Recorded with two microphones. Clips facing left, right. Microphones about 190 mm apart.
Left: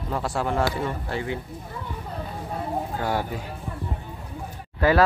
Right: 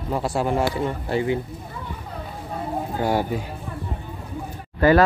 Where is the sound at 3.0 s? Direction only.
15° right (ahead or behind).